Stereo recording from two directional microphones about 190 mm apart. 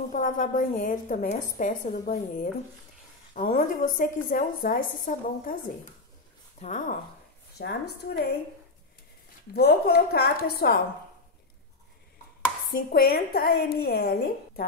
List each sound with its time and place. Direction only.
0.1 s a woman's voice: 45° left (ahead or behind)
7.5 s a woman's voice: 60° left (ahead or behind)
9.5 s a woman's voice: 55° left (ahead or behind)
12.7 s a woman's voice: 50° left (ahead or behind)